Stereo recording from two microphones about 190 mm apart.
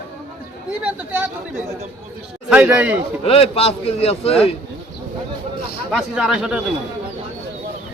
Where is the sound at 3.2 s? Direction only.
30° left (ahead or behind).